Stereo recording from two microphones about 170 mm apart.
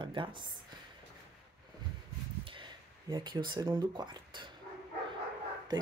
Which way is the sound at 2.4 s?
30° right (ahead or behind).